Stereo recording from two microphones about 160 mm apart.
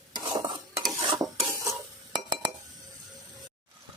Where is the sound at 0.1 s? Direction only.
25° right (ahead or behind).